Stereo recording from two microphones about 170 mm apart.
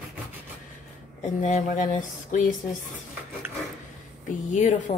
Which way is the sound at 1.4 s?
50° left (ahead or behind).